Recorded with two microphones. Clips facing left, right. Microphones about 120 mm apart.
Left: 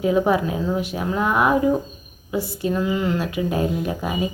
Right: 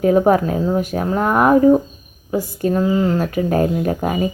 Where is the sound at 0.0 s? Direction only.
45° right (ahead or behind).